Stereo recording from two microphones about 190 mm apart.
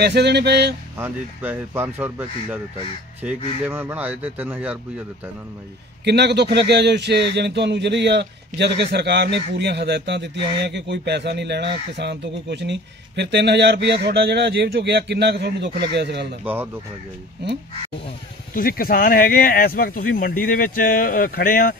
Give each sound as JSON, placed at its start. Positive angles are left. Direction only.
{"t": 0.0, "sound": "a man's voice", "side_deg": -60}
{"t": 0.9, "sound": "speech", "side_deg": -10}
{"t": 3.6, "sound": "speech", "side_deg": -10}
{"t": 6.0, "sound": "a man's voice", "side_deg": -60}
{"t": 18.5, "sound": "speech", "side_deg": 50}